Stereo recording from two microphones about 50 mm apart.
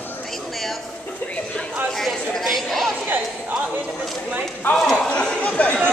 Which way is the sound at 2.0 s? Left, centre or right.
Centre.